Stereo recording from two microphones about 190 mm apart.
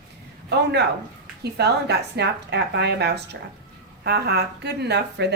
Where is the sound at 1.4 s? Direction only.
60° right (ahead or behind).